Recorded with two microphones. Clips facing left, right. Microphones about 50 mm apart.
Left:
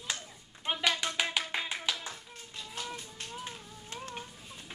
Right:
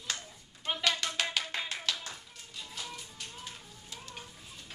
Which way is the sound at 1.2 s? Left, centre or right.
Centre.